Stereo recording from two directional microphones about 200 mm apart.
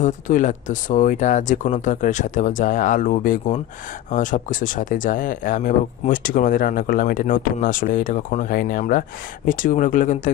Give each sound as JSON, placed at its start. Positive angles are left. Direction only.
{"t": 0.0, "sound": "speech", "side_deg": 40}